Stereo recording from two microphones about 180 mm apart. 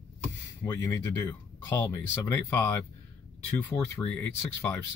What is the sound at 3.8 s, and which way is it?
Speech, 15° left (ahead or behind).